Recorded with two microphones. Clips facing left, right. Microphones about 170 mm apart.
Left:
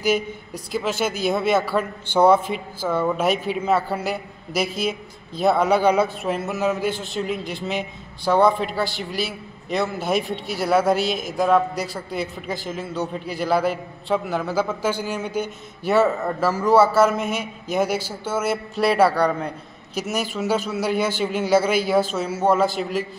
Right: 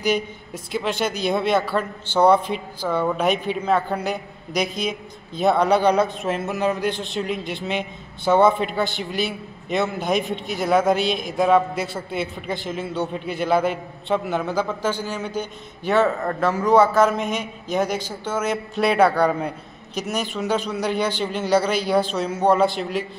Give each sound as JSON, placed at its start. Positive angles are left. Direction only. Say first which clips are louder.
{"t": 0.0, "sound": "a man's voice", "louder": "left 1 dB", "side_deg": 0}